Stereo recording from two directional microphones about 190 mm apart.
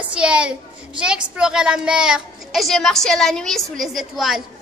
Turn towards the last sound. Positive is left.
turn(degrees=0)  # may be behind; listen again after turning